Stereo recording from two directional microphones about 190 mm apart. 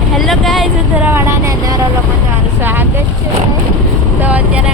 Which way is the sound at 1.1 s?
15° right (ahead or behind).